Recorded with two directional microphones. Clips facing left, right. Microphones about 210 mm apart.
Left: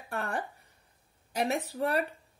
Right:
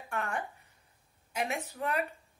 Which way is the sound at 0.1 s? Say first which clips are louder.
Left 1 dB; 35° left (ahead or behind).